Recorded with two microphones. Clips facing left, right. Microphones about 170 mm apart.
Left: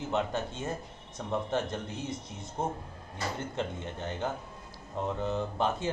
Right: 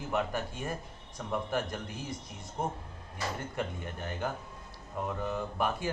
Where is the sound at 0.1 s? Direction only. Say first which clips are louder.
Left 1 dB; 25° left (ahead or behind).